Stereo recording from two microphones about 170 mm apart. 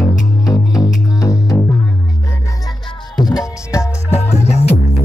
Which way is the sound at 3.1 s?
25° left (ahead or behind).